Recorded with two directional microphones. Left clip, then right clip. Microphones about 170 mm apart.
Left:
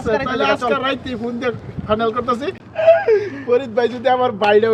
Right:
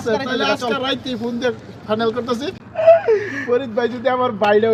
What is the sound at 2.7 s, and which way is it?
Whimper, 35° left (ahead or behind).